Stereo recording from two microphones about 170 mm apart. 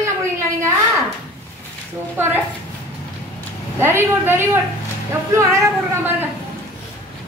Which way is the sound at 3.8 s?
15° right (ahead or behind).